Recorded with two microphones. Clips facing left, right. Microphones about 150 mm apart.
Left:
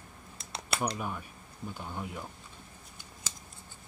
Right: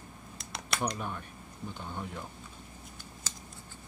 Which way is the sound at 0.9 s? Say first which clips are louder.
Left 1 dB; 5° left (ahead or behind).